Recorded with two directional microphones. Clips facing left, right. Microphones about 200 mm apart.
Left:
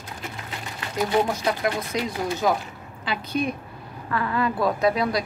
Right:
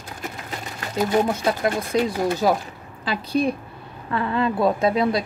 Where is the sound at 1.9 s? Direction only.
30° right (ahead or behind).